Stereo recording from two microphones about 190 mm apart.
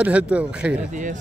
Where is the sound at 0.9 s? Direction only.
40° right (ahead or behind).